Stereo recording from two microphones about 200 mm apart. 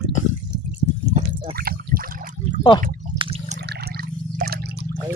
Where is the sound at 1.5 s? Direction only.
50° right (ahead or behind).